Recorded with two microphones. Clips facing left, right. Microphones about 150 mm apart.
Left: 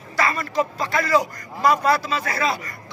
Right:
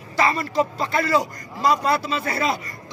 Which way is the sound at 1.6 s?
50° left (ahead or behind).